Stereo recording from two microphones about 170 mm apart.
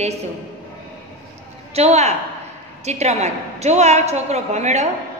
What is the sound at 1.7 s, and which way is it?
A woman's voice, 40° right (ahead or behind).